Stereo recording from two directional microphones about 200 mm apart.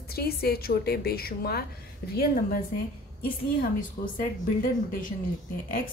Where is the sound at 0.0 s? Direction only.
50° left (ahead or behind).